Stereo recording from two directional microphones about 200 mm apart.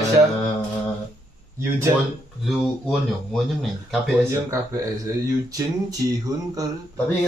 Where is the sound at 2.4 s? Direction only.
Centre (ahead or behind).